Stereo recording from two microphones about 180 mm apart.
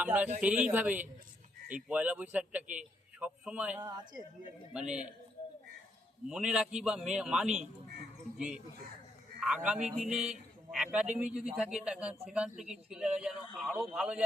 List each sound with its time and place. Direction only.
0.0 s a man's voice: 10° right (ahead or behind)
3.8 s speech: 20° right (ahead or behind)
4.7 s speech: 5° right (ahead or behind)
6.2 s speech: 5° right (ahead or behind)